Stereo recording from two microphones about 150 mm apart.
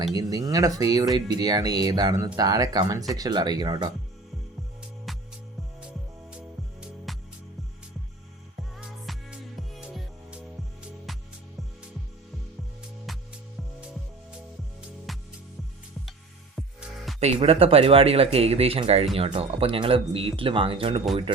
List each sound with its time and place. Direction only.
0.1 s speech: 25° right (ahead or behind)
5.1 s music: centre (ahead or behind)
6.3 s music: 5° right (ahead or behind)
8.7 s music: 5° right (ahead or behind)
13.1 s music: centre (ahead or behind)
14.8 s music: centre (ahead or behind)
17.2 s speech: 40° right (ahead or behind)